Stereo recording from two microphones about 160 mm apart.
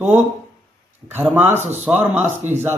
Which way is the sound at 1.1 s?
10° right (ahead or behind).